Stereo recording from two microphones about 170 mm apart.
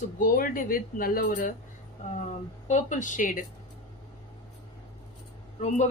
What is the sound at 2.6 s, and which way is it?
Speech, 45° left (ahead or behind).